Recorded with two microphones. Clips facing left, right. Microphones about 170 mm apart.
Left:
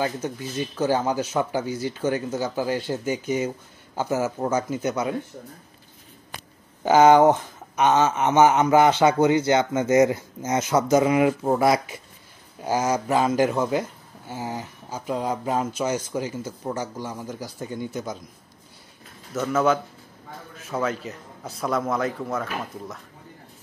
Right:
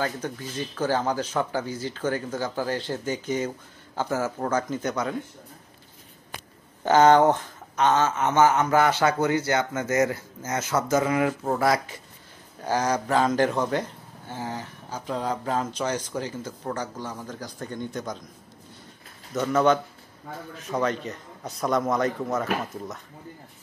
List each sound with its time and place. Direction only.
0.0 s speech: 15° left (ahead or behind)
6.8 s speech: 10° left (ahead or behind)
19.3 s a man's voice: 5° left (ahead or behind)